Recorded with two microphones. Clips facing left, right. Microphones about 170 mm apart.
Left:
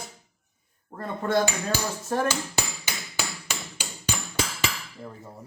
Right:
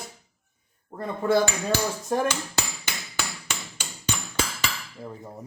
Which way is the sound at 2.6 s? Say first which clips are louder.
Even; centre (ahead or behind).